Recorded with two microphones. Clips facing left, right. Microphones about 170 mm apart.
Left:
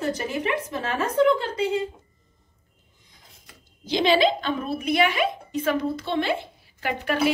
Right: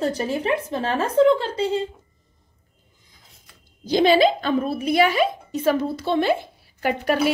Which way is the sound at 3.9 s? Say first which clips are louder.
Right 4 dB; 45° right (ahead or behind).